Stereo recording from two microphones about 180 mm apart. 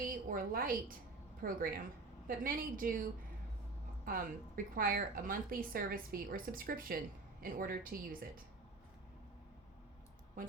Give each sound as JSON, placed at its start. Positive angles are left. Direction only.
{"t": 0.0, "sound": "a woman's voice", "side_deg": -50}